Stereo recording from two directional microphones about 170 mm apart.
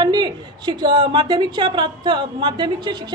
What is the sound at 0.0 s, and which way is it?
A woman's voice, 25° right (ahead or behind).